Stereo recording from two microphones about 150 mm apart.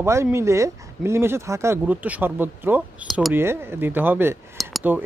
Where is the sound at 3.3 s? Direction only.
15° right (ahead or behind).